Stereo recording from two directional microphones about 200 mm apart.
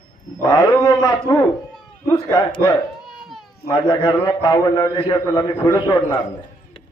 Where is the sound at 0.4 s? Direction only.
20° left (ahead or behind).